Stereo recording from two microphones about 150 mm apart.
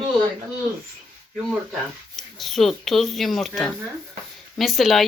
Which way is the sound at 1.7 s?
Centre (ahead or behind).